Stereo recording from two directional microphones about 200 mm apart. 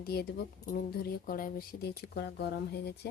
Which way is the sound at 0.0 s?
50° left (ahead or behind).